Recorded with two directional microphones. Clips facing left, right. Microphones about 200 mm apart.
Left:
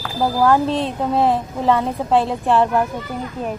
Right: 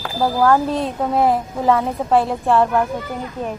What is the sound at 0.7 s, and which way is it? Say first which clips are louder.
A woman's voice: even; centre (ahead or behind).